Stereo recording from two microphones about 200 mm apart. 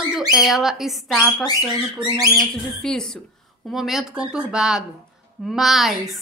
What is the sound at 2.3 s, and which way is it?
A woman's voice, 5° left (ahead or behind).